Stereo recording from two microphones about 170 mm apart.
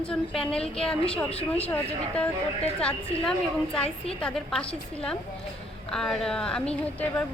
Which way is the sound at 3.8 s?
35° left (ahead or behind).